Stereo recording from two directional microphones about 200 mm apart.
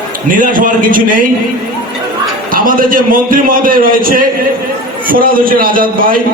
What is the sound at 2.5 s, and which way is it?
A man's voice, 45° right (ahead or behind).